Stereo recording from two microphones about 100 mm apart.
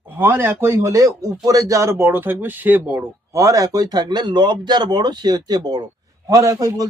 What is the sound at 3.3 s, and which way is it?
A man's voice, 30° right (ahead or behind).